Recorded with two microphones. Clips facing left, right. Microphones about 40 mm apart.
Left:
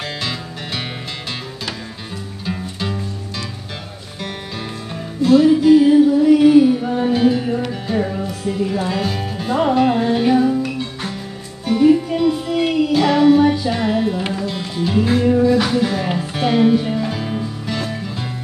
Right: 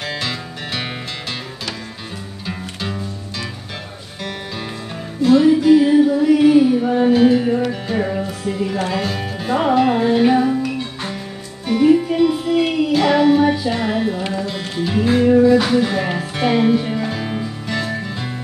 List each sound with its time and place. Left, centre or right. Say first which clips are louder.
0.2 s music: even; centre
2.4 s music: left 2 dB; centre
5.2 s music: left 1 dB; centre
10.3 s music: left 1 dB; centre
11.6 s music: even; centre